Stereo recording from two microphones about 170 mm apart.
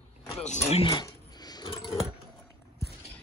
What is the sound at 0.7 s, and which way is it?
Dog, 35° left (ahead or behind).